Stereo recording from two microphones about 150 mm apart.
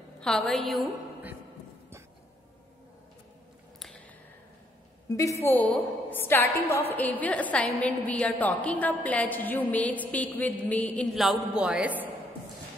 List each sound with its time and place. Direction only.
0.2 s a woman's voice: 5° left (ahead or behind)
5.1 s a woman's voice: 20° left (ahead or behind); by 12.1 s 10° right (ahead or behind)